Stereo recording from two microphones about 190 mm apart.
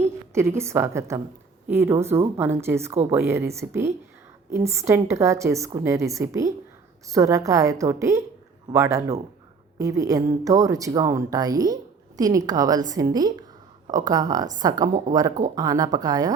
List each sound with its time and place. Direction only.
0.0 s a woman's voice: 15° right (ahead or behind)